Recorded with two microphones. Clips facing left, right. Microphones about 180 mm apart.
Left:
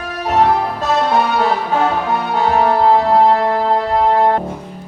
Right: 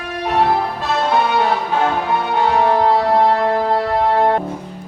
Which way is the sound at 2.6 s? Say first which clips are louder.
Left 3 dB; 35° left (ahead or behind).